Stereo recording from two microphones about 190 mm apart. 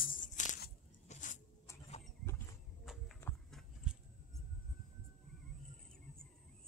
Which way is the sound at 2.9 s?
Centre (ahead or behind).